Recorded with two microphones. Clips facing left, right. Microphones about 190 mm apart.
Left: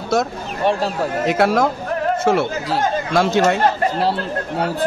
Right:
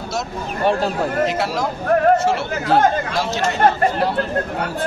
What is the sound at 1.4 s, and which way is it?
Speech, 55° left (ahead or behind).